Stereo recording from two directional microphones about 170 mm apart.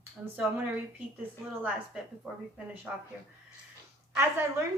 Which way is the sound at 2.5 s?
10° right (ahead or behind).